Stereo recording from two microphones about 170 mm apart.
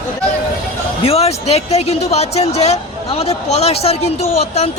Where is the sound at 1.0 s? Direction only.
35° left (ahead or behind).